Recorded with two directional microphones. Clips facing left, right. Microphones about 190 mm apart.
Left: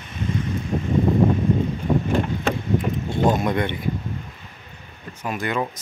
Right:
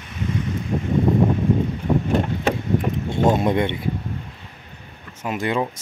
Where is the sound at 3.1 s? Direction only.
25° right (ahead or behind).